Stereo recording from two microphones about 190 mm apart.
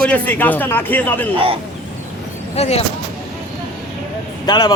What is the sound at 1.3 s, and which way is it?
Speech, 30° right (ahead or behind).